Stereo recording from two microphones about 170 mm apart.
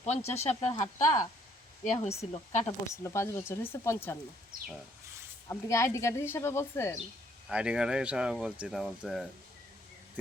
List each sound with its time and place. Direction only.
0.0 s speech: 40° left (ahead or behind)
0.7 s speech: 25° left (ahead or behind)
1.8 s speech: 35° left (ahead or behind)
2.9 s speech: 15° left (ahead or behind)
4.5 s speech: 55° right (ahead or behind)
5.5 s speech: 15° left (ahead or behind)
7.4 s speech: 5° right (ahead or behind)